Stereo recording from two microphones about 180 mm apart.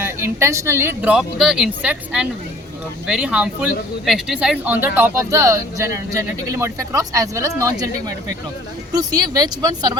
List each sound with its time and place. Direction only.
0.0 s speech: 15° right (ahead or behind)